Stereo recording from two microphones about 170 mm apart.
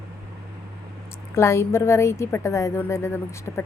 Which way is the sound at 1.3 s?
15° left (ahead or behind).